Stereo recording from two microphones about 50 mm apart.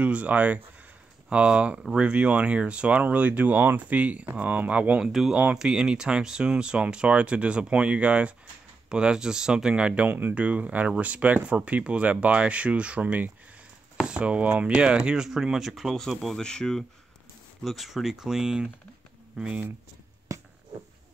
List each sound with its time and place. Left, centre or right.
0.0 s speech: right
1.3 s speech: centre; by 4.6 s right
4.6 s speech: right
5.0 s speech: centre
16.0 s speech: centre
16.3 s speech: centre
17.6 s speech: centre; by 19.6 s right
20.3 s a sound: right